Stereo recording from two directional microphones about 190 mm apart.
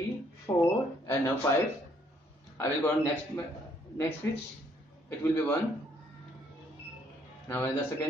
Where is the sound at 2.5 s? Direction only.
15° left (ahead or behind).